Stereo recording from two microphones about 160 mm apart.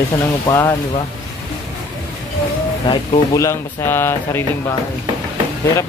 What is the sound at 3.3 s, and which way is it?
Speech, 20° left (ahead or behind).